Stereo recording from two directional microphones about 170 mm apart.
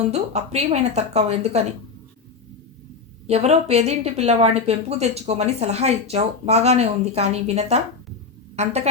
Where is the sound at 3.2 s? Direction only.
40° right (ahead or behind).